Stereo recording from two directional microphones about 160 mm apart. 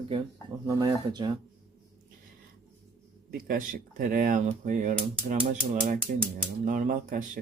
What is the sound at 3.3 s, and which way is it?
Speech, 65° right (ahead or behind).